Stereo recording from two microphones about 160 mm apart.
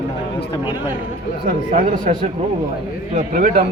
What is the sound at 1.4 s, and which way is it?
Speech, 50° right (ahead or behind).